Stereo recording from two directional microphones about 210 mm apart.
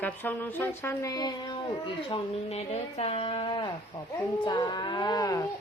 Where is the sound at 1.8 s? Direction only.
30° left (ahead or behind).